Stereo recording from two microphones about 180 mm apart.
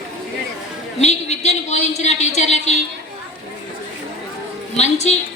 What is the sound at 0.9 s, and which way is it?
A woman's voice, 40° left (ahead or behind).